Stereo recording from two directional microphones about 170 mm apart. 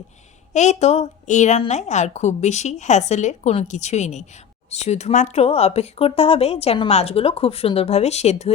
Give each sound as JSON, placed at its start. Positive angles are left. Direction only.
{"t": 0.5, "sound": "a woman's voice", "side_deg": 45}